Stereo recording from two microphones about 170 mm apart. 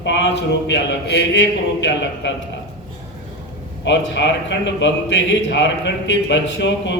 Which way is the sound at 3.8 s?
90° left.